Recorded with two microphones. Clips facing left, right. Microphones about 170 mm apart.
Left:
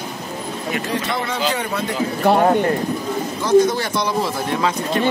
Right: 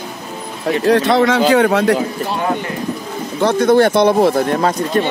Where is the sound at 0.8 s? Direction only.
75° right (ahead or behind).